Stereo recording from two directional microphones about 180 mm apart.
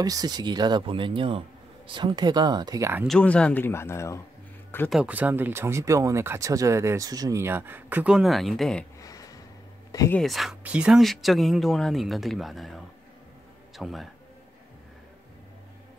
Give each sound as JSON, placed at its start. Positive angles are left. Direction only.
{"t": 0.0, "sound": "speech", "side_deg": -20}
{"t": 3.1, "sound": "speech", "side_deg": 5}
{"t": 4.8, "sound": "speech", "side_deg": -5}
{"t": 9.0, "sound": "a sound", "side_deg": 20}
{"t": 9.9, "sound": "speech", "side_deg": 15}
{"t": 10.2, "sound": "speech", "side_deg": 0}